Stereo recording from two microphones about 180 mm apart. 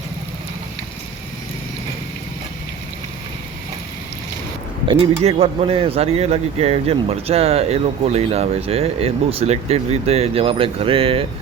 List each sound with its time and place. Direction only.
4.9 s speech: 35° right (ahead or behind)